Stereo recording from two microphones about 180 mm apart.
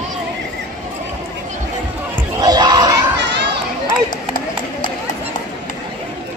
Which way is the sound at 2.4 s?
25° right (ahead or behind).